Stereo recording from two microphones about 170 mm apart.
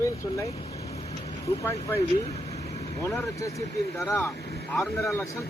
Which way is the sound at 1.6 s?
15° left (ahead or behind).